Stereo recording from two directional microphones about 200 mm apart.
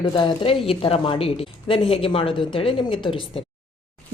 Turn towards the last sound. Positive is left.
turn(degrees=25)  # may be behind; listen again after turning